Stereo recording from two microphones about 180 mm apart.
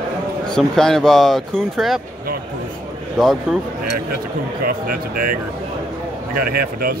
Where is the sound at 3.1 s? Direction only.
Centre (ahead or behind).